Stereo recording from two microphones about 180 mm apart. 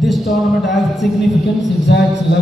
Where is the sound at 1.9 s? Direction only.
70° left (ahead or behind).